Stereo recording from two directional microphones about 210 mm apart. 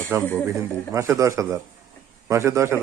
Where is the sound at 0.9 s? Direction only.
15° right (ahead or behind).